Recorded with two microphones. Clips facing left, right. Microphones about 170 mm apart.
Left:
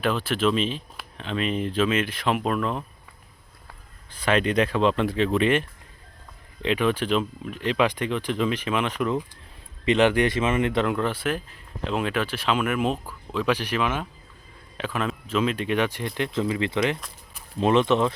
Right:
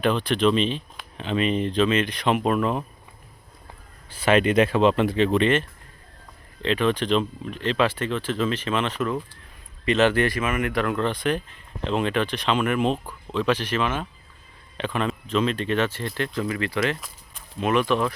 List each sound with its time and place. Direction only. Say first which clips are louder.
0.0 s speech: right 3 dB; 5° left (ahead or behind)
4.1 s speech: right 3 dB; 5° right (ahead or behind)
6.6 s speech: right 1 dB; 10° left (ahead or behind)
10.9 s speech: right 2 dB; 10° left (ahead or behind)